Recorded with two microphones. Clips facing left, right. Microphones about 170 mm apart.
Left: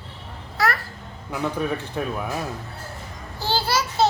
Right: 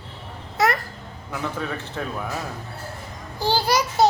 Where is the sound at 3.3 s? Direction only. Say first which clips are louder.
Right 3 dB; 15° right (ahead or behind).